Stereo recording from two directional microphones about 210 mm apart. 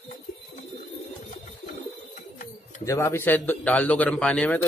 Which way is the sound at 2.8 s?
10° left (ahead or behind).